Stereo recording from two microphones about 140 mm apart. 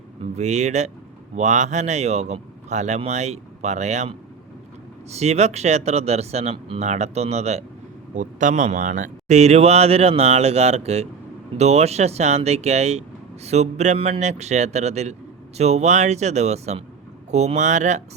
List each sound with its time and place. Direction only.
0.2 s speech: 50° right (ahead or behind)
8.1 s speech: 65° right (ahead or behind)